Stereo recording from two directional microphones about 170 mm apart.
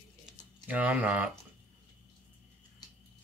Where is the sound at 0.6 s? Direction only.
10° right (ahead or behind).